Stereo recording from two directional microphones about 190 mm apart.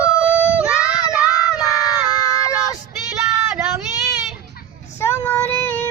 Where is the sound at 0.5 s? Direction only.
5° right (ahead or behind).